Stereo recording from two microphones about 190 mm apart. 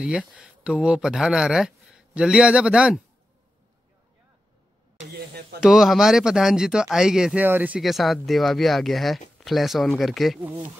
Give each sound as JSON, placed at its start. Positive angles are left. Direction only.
{"t": 0.0, "sound": "speech", "side_deg": -5}
{"t": 5.1, "sound": "a sound", "side_deg": -60}
{"t": 5.6, "sound": "speech", "side_deg": 0}